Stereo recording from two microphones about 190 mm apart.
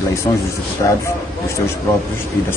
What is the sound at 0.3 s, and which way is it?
Speech, 25° left (ahead or behind).